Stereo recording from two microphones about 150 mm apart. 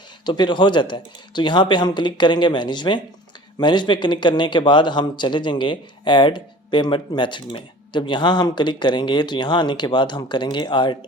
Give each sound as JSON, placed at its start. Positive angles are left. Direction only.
{"t": 0.3, "sound": "a man's voice", "side_deg": 30}